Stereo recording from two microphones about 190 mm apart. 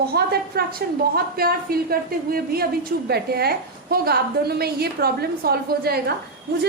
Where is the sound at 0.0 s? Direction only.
55° right (ahead or behind).